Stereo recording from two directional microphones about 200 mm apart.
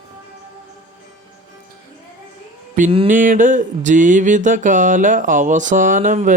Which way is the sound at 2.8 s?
30° right (ahead or behind).